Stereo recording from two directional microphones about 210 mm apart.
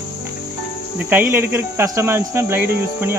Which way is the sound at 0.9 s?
10° right (ahead or behind).